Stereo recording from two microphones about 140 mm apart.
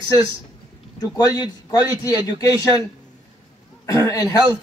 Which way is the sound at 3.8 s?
25° left (ahead or behind).